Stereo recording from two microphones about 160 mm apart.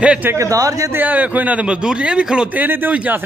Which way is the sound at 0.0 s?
10° right (ahead or behind).